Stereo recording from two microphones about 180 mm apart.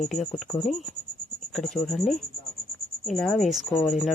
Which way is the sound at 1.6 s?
Centre (ahead or behind).